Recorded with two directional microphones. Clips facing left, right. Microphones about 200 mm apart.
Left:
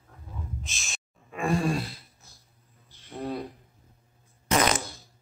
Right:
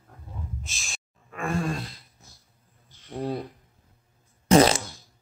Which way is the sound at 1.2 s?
15° left (ahead or behind).